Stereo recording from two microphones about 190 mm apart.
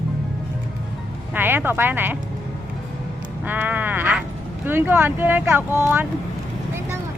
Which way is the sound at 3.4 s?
10° right (ahead or behind).